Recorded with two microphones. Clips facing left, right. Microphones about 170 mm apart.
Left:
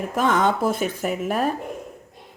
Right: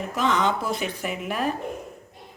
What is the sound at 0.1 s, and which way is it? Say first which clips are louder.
Speech: left 3 dB; 50° left (ahead or behind).